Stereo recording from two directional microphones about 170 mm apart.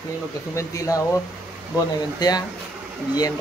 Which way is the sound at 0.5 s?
20° left (ahead or behind).